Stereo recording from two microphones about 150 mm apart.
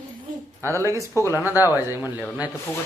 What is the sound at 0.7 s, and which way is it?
Speech, 20° right (ahead or behind).